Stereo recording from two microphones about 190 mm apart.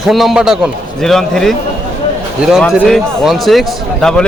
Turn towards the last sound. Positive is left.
turn(degrees=5)  # may be behind; listen again after turning